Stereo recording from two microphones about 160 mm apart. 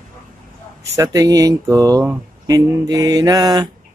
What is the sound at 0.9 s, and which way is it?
Speech, 20° right (ahead or behind).